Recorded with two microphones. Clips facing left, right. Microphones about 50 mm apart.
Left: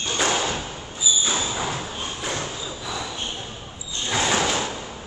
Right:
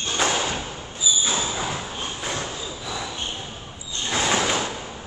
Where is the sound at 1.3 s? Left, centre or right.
Centre.